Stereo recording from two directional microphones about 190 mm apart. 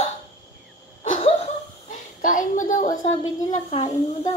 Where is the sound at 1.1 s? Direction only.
30° left (ahead or behind).